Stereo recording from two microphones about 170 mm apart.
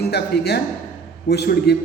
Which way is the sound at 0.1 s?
70° left (ahead or behind).